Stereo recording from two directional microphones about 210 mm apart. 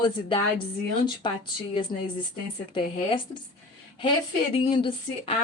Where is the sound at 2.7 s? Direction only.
25° left (ahead or behind).